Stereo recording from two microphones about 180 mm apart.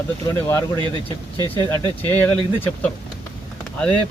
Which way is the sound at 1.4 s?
20° right (ahead or behind).